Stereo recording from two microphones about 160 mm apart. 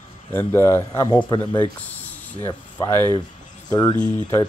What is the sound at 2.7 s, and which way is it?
A man's voice, 20° left (ahead or behind).